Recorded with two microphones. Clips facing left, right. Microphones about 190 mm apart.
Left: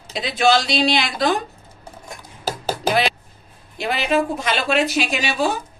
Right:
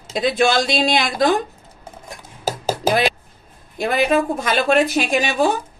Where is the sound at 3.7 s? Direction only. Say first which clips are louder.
Right 3 dB; 50° right (ahead or behind).